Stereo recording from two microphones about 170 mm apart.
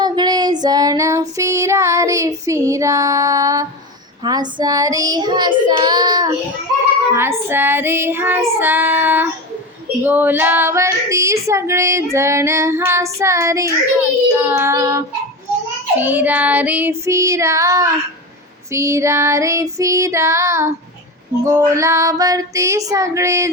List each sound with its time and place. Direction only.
0.0 s child singing: 25° right (ahead or behind)